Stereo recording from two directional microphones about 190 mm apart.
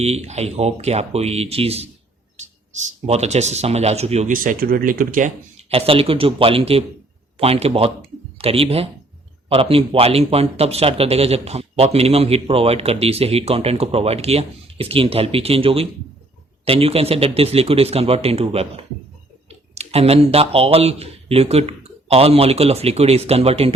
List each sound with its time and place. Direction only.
0.0 s speech: 35° right (ahead or behind)
3.1 s speech: 35° right (ahead or behind)
5.7 s speech: 30° right (ahead or behind)
19.7 s speech: 35° right (ahead or behind)